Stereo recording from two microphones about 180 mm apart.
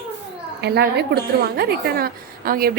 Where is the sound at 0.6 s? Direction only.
65° right (ahead or behind).